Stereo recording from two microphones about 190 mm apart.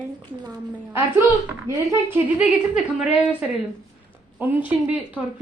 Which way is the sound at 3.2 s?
5° right (ahead or behind).